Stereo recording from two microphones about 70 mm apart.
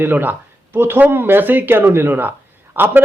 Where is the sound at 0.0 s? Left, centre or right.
Right.